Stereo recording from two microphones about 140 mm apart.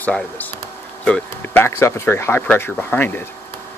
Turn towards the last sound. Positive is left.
turn(degrees=15)  # may be behind; listen again after turning